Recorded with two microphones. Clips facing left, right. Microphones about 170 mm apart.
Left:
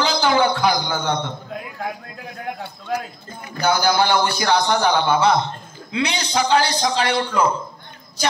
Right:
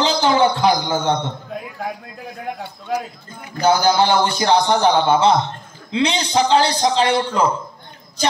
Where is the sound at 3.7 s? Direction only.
30° right (ahead or behind).